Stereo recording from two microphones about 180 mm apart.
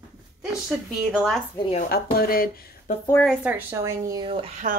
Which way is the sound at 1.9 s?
55° left (ahead or behind).